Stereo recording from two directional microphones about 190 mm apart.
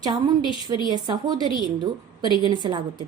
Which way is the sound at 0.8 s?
25° right (ahead or behind).